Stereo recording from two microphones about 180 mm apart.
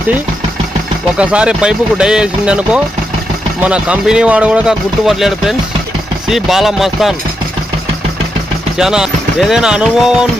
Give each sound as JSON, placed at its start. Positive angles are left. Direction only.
{"t": 1.2, "sound": "speech", "side_deg": -5}
{"t": 8.8, "sound": "speech", "side_deg": -5}